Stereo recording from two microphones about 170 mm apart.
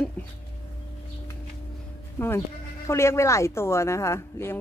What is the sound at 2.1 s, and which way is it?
Speech, 15° left (ahead or behind).